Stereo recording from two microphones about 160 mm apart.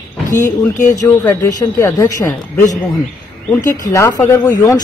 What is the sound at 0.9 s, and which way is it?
Speech, 20° left (ahead or behind).